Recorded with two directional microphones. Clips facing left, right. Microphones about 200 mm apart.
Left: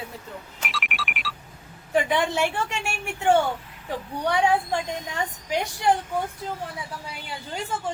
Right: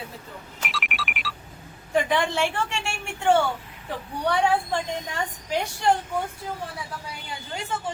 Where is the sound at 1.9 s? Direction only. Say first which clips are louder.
Even; 10° left (ahead or behind).